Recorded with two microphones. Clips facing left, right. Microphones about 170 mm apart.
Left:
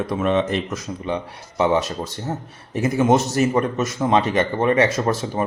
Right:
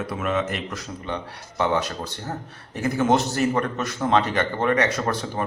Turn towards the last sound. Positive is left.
turn(degrees=25)  # may be behind; listen again after turning